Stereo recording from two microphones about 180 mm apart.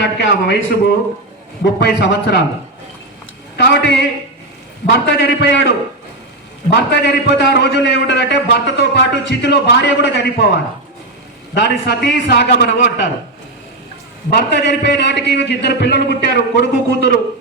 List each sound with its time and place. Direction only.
0.0 s a man's voice: 70° left (ahead or behind)
1.6 s a man's voice: 70° left (ahead or behind)
3.6 s a man's voice: 65° left (ahead or behind)
14.3 s a man's voice: 65° left (ahead or behind)